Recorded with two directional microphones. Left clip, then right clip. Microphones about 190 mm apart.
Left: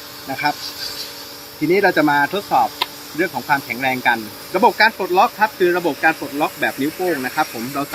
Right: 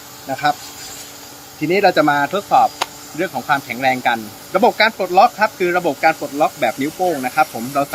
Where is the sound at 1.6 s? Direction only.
15° right (ahead or behind).